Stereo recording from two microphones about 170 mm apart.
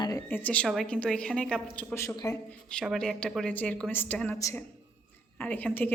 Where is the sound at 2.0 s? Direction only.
20° left (ahead or behind).